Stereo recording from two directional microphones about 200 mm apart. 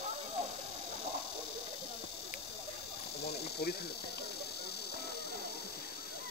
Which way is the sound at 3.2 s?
55° left (ahead or behind).